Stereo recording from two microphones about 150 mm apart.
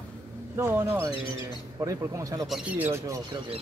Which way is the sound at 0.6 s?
20° right (ahead or behind).